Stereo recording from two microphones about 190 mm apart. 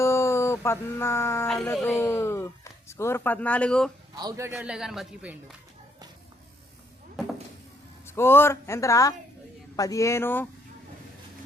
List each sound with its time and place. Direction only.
0.0 s a sound: 15° left (ahead or behind)
1.5 s speech: 15° left (ahead or behind)
4.1 s a man's voice: 20° right (ahead or behind)
4.5 s a woman's voice: 5° right (ahead or behind)
8.0 s speech: 15° left (ahead or behind)